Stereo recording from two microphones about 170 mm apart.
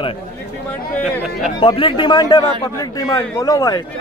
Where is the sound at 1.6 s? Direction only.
30° left (ahead or behind).